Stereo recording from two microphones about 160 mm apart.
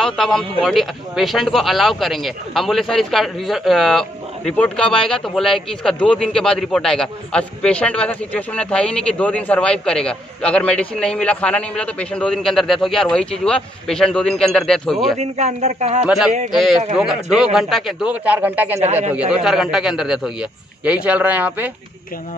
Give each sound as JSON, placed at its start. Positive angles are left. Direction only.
{"t": 0.0, "sound": "speech", "side_deg": 0}
{"t": 15.1, "sound": "speech", "side_deg": -45}
{"t": 16.5, "sound": "a man's voice", "side_deg": 0}